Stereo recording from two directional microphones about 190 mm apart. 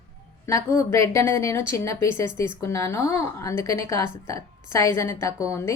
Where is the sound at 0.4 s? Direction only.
15° left (ahead or behind).